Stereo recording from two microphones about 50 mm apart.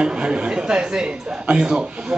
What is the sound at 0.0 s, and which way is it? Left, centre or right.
A man's voice, centre.